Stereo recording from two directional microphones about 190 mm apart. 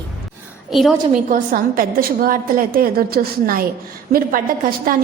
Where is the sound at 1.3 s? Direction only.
50° right (ahead or behind).